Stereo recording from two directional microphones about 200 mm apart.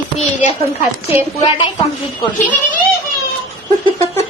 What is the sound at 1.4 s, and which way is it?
Speech, 25° left (ahead or behind).